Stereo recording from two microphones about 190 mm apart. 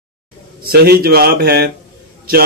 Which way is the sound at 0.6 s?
55° right (ahead or behind).